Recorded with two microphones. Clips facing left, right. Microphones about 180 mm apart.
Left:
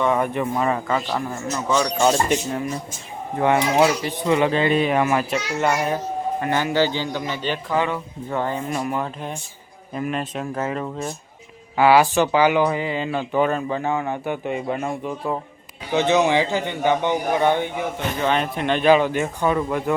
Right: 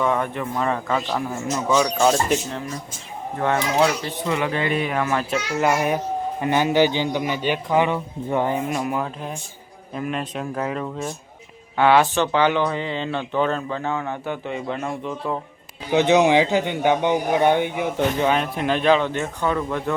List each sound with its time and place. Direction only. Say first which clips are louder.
0.2 s a man's voice: left 3 dB; 10° left (ahead or behind); by 1.9 s 10° right (ahead or behind)
2.0 s speech: even; centre (ahead or behind)
4.3 s a man's voice: left 5 dB; 25° left (ahead or behind)
5.3 s a man's voice: right 1 dB; 5° right (ahead or behind)
15.9 s a man's voice: right 2 dB; 15° right (ahead or behind)
18.2 s speech: right 1 dB; 5° right (ahead or behind); by 20.0 s 10° left (ahead or behind)